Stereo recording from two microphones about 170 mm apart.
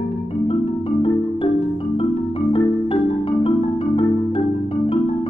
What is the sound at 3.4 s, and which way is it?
Marimba, 35° left (ahead or behind).